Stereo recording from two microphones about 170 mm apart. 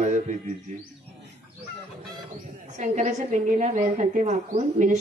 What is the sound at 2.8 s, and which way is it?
A woman's voice, 45° right (ahead or behind).